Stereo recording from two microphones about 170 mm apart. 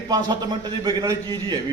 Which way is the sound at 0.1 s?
25° right (ahead or behind).